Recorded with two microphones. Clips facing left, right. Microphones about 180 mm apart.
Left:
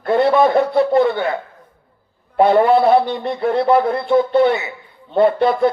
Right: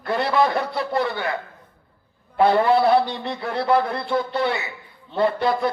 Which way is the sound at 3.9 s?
50° left (ahead or behind).